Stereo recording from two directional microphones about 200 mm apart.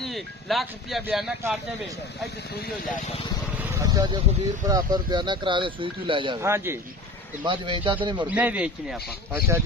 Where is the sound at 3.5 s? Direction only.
10° right (ahead or behind).